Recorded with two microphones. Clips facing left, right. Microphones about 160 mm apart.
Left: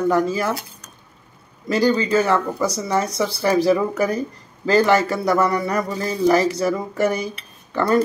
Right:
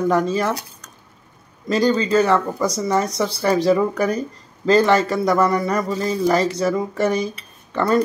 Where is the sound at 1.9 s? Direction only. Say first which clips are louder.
Right 2 dB; 15° right (ahead or behind).